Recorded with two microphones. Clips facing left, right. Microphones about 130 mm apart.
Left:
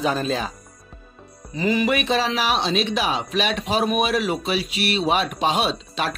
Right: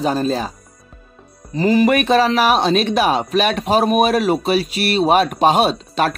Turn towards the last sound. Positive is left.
turn(degrees=-45)  # may be behind; listen again after turning